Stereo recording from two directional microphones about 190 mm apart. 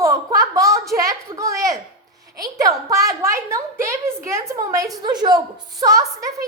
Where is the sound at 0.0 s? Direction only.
15° right (ahead or behind).